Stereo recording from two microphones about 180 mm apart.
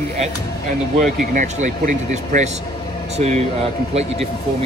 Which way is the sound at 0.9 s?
45° right (ahead or behind).